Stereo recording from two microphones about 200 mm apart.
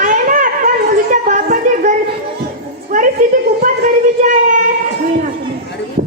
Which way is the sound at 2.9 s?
40° right (ahead or behind).